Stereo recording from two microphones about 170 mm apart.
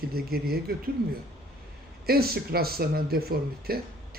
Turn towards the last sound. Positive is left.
turn(degrees=-65)  # may be behind; listen again after turning